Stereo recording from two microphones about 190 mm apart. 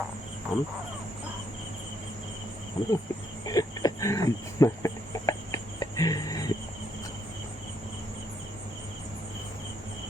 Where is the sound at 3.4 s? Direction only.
20° left (ahead or behind).